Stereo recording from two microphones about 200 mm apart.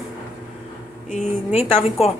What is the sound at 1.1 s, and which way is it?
Speech, 35° left (ahead or behind).